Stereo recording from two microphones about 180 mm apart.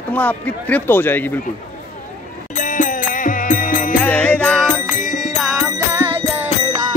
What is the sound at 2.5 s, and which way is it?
Music, 45° left (ahead or behind).